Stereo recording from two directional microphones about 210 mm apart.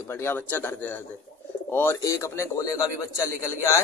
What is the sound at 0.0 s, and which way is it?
Speech, 10° left (ahead or behind).